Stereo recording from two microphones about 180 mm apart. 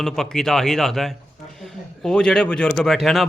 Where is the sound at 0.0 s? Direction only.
5° left (ahead or behind).